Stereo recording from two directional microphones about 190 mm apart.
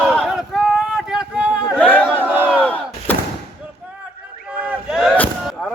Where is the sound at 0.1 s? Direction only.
Centre (ahead or behind).